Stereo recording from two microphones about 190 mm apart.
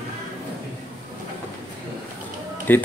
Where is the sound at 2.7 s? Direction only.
10° left (ahead or behind).